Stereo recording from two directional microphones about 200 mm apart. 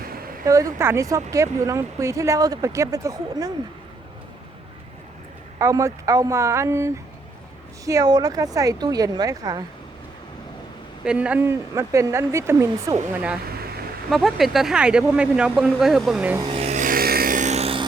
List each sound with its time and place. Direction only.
0.0 s a sound: 45° right (ahead or behind)
0.4 s speech: 15° right (ahead or behind)
5.5 s speech: 15° right (ahead or behind)
11.0 s speech: 5° right (ahead or behind)
14.1 s speech: centre (ahead or behind)
16.4 s music: 30° right (ahead or behind)